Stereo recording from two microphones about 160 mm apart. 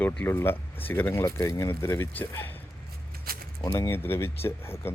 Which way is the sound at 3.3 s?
70° right (ahead or behind).